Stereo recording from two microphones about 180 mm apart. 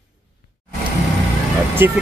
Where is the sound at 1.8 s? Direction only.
10° right (ahead or behind).